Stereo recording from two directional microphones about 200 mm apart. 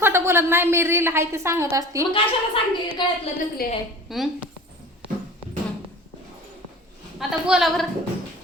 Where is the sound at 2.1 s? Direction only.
25° left (ahead or behind).